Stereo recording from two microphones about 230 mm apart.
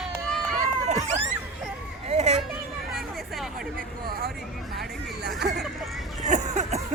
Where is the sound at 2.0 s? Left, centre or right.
Right.